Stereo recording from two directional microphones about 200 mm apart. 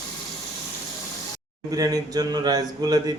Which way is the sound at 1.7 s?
20° right (ahead or behind).